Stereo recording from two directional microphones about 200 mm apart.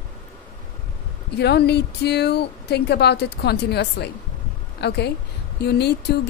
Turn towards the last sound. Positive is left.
turn(degrees=55)  # may be behind; listen again after turning